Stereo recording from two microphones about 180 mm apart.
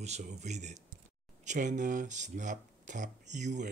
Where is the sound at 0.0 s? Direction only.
40° right (ahead or behind).